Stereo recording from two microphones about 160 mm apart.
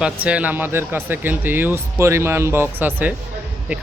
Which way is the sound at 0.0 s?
10° right (ahead or behind).